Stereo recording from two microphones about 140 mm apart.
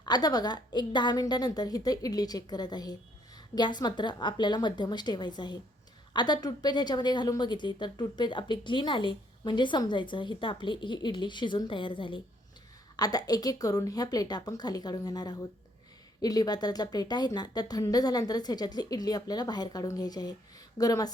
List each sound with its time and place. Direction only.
0.0 s a woman's voice: 30° left (ahead or behind)